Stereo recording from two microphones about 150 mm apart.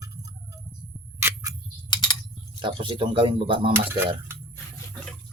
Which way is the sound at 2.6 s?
35° right (ahead or behind).